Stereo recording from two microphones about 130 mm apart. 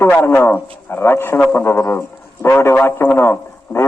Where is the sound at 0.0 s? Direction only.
20° left (ahead or behind).